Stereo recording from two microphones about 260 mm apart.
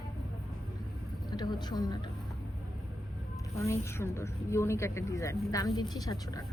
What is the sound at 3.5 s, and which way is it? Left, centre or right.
Speech, centre.